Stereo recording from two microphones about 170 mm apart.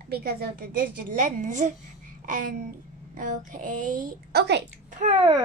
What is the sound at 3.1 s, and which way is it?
A woman's voice, 50° right (ahead or behind).